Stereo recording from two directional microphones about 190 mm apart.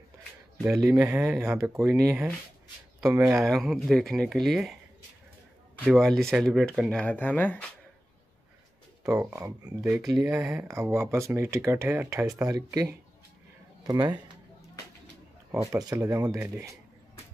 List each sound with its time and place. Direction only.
1.0 s speech: 5° right (ahead or behind)
3.3 s speech: centre (ahead or behind)
5.9 s speech: centre (ahead or behind)
9.0 s speech: 15° right (ahead or behind)
10.0 s speech: 5° right (ahead or behind); by 14.2 s 20° right (ahead or behind)
15.5 s speech: 15° right (ahead or behind)